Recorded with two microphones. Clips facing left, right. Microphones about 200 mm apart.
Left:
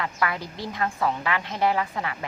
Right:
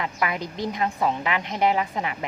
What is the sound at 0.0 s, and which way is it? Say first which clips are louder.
A woman's voice: right 1 dB; 20° right (ahead or behind).